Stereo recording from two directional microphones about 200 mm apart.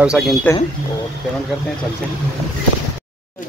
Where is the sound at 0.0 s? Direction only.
5° right (ahead or behind).